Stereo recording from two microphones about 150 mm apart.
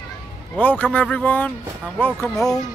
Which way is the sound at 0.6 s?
10° left (ahead or behind).